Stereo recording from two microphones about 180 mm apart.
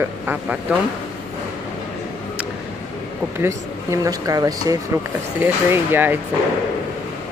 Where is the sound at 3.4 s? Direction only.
15° right (ahead or behind).